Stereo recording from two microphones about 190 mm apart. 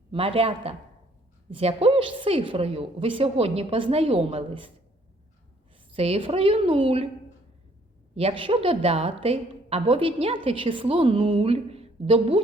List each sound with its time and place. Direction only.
0.1 s a woman's voice: 30° right (ahead or behind)
5.9 s a woman's voice: 30° right (ahead or behind)
8.1 s a woman's voice: 30° right (ahead or behind)